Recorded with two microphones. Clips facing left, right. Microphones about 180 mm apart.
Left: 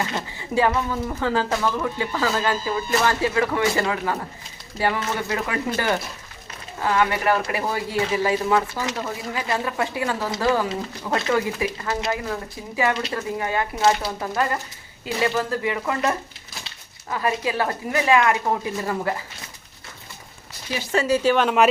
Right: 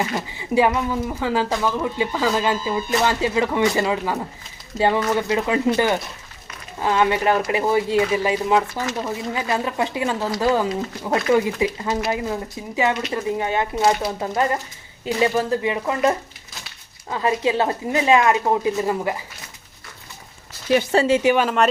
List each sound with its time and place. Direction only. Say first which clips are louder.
0.3 s speech: right 2 dB; 15° right (ahead or behind)
20.9 s speech: right 1 dB; 30° right (ahead or behind)
21.2 s speech: right 2 dB; 15° right (ahead or behind)
21.4 s speech: left 1 dB; 5° left (ahead or behind)